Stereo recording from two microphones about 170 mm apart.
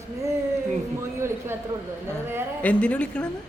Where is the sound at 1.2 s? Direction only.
15° right (ahead or behind).